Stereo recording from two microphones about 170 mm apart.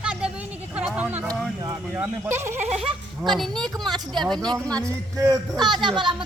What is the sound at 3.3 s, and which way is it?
Speech, centre (ahead or behind).